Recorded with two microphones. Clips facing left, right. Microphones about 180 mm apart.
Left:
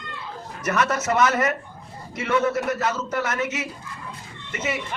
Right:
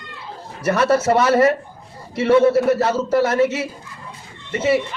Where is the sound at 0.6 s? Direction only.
30° right (ahead or behind).